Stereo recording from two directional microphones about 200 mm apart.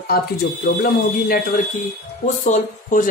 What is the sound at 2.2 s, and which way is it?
Speech, 40° left (ahead or behind).